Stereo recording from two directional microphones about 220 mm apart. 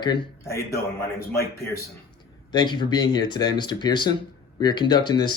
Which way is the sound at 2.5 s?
20° left (ahead or behind).